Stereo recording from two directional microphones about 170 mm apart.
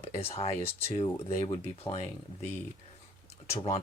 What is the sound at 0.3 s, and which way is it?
Speech, 35° left (ahead or behind).